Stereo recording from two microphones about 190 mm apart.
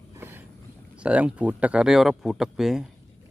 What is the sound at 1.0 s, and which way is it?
Speech, 5° right (ahead or behind).